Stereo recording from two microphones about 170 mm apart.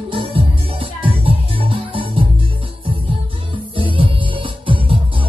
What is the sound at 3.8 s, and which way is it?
Music, 30° right (ahead or behind).